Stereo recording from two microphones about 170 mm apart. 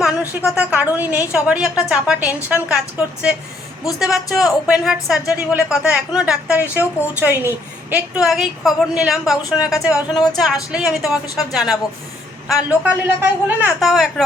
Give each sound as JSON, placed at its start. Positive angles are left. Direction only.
{"t": 0.6, "sound": "a woman's voice", "side_deg": -10}
{"t": 4.0, "sound": "a woman's voice", "side_deg": 0}
{"t": 9.7, "sound": "speech", "side_deg": 20}
{"t": 10.3, "sound": "a woman's voice", "side_deg": 0}